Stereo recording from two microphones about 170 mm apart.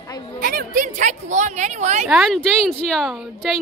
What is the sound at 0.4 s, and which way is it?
A woman's voice, 55° right (ahead or behind).